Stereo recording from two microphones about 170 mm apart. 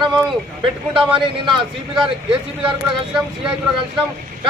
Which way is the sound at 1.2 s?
25° right (ahead or behind).